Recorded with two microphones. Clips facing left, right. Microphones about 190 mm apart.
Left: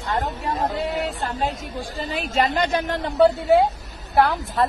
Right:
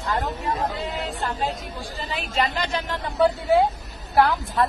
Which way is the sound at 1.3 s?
45° left (ahead or behind).